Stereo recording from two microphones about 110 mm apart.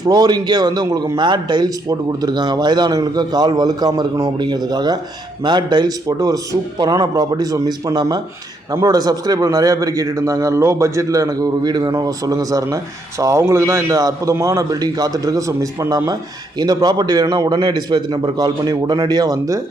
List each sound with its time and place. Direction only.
0.0 s a man's voice: 40° right (ahead or behind)